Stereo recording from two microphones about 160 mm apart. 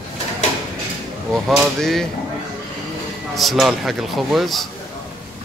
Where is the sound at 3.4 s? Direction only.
Centre (ahead or behind).